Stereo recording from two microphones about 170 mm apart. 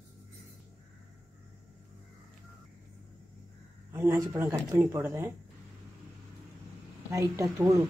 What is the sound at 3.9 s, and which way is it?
Speech, 15° right (ahead or behind).